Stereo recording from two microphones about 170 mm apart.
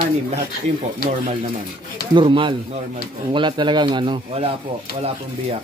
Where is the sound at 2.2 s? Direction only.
30° right (ahead or behind).